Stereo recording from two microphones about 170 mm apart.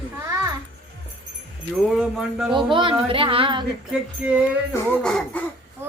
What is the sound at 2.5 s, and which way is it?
Speech, 30° right (ahead or behind).